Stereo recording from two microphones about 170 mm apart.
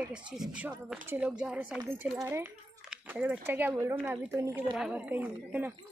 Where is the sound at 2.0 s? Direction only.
15° right (ahead or behind).